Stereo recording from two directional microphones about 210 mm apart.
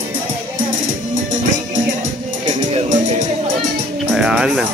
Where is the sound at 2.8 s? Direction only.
35° right (ahead or behind).